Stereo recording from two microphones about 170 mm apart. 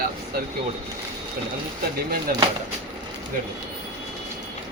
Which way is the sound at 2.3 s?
55° right (ahead or behind).